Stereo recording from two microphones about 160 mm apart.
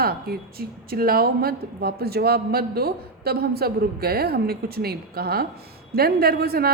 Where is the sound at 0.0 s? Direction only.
70° right (ahead or behind).